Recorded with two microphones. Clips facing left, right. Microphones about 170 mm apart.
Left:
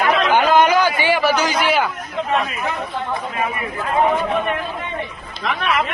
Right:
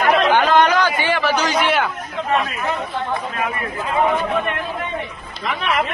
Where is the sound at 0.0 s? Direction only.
40° right (ahead or behind).